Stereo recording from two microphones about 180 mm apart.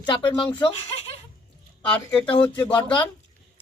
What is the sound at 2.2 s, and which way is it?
Speech, 30° left (ahead or behind).